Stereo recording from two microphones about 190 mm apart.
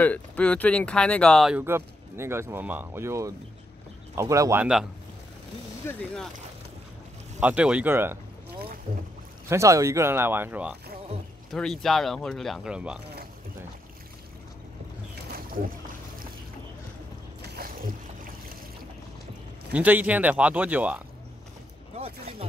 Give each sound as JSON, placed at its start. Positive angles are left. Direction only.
{"t": 0.0, "sound": "speech", "side_deg": 10}
{"t": 1.6, "sound": "speech", "side_deg": -15}
{"t": 5.9, "sound": "speech", "side_deg": 10}
{"t": 7.3, "sound": "speech", "side_deg": -5}
{"t": 9.5, "sound": "speech", "side_deg": -15}
{"t": 11.5, "sound": "speech", "side_deg": 0}
{"t": 15.3, "sound": "boat", "side_deg": -45}
{"t": 17.4, "sound": "boat", "side_deg": -50}
{"t": 19.7, "sound": "speech", "side_deg": -10}